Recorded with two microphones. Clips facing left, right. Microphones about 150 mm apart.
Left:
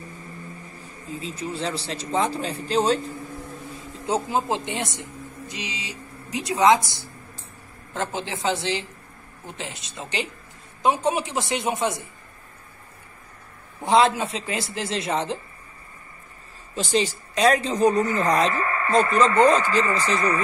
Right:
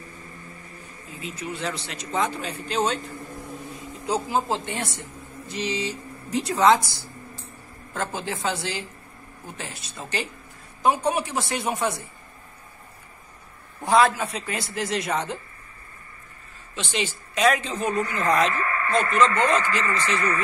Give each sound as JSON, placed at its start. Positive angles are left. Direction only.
{"t": 1.2, "sound": "a woman's voice", "side_deg": 30}
{"t": 4.0, "sound": "a woman's voice", "side_deg": 25}
{"t": 13.8, "sound": "a woman's voice", "side_deg": 25}
{"t": 16.7, "sound": "a woman's voice", "side_deg": 35}